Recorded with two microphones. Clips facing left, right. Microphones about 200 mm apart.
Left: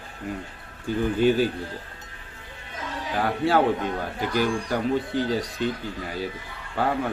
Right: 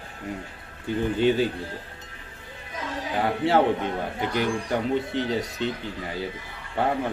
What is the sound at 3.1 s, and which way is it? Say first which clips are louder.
A man's voice: even; 25° right (ahead or behind).